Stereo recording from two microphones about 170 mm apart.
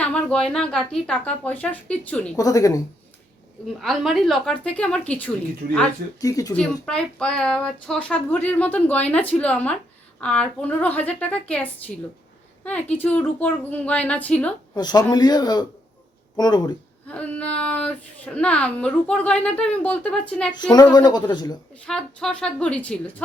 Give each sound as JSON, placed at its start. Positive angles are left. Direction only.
{"t": 0.0, "sound": "speech", "side_deg": 5}
{"t": 2.3, "sound": "speech", "side_deg": 20}
{"t": 3.8, "sound": "a woman's voice", "side_deg": 0}
{"t": 6.1, "sound": "speech", "side_deg": 20}
{"t": 6.5, "sound": "speech", "side_deg": 5}
{"t": 14.8, "sound": "speech", "side_deg": 25}
{"t": 17.1, "sound": "speech", "side_deg": 10}
{"t": 20.6, "sound": "speech", "side_deg": 25}
{"t": 21.8, "sound": "a woman's voice", "side_deg": 5}